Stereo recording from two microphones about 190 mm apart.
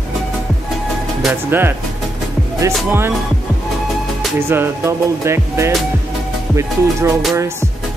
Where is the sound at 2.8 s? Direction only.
10° right (ahead or behind).